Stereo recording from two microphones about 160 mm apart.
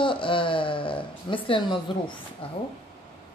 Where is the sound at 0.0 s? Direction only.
30° left (ahead or behind).